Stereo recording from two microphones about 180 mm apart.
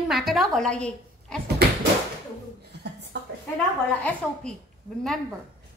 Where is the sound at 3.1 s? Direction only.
70° right (ahead or behind).